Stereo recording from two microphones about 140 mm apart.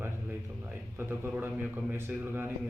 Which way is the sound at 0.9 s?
15° right (ahead or behind).